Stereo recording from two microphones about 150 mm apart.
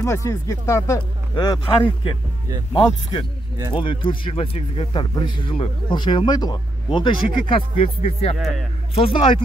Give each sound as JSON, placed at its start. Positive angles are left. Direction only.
{"t": 0.0, "sound": "speech", "side_deg": 20}
{"t": 8.4, "sound": "speech", "side_deg": 0}
{"t": 8.9, "sound": "speech", "side_deg": 35}